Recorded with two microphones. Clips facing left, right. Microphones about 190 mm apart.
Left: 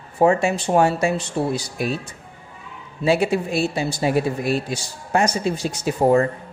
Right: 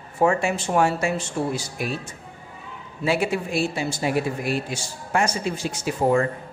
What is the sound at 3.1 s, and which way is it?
Speech, 30° left (ahead or behind).